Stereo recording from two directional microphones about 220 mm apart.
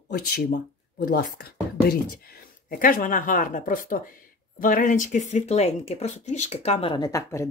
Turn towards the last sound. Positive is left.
turn(degrees=15)  # may be behind; listen again after turning